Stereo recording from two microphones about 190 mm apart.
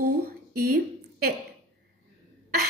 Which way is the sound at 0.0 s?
55° right (ahead or behind).